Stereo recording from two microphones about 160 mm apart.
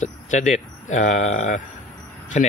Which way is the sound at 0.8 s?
50° left (ahead or behind).